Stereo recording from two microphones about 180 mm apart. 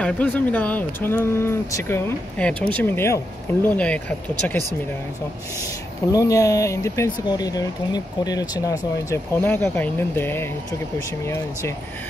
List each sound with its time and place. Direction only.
0.0 s speech: 10° left (ahead or behind)
6.1 s speech: 20° left (ahead or behind)